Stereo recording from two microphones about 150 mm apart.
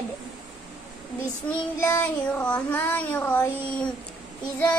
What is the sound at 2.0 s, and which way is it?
Child singing, 10° left (ahead or behind).